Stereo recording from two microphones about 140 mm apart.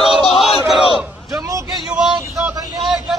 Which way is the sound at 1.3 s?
25° right (ahead or behind).